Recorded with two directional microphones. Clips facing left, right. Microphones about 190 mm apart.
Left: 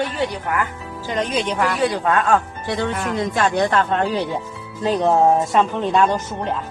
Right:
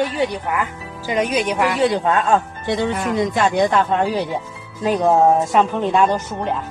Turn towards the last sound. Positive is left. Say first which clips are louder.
# right 1 dB
turn(degrees=-15)  # may be behind; listen again after turning